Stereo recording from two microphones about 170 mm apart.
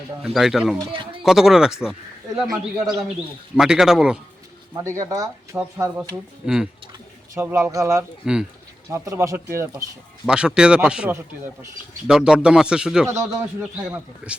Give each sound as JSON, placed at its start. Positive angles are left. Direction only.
{"t": 0.3, "sound": "a man's voice", "side_deg": 0}
{"t": 4.7, "sound": "speech", "side_deg": -15}
{"t": 6.4, "sound": "a man's voice", "side_deg": -5}
{"t": 8.2, "sound": "a man's voice", "side_deg": -5}
{"t": 8.9, "sound": "speech", "side_deg": -20}
{"t": 10.2, "sound": "a man's voice", "side_deg": -5}
{"t": 14.2, "sound": "speech", "side_deg": -10}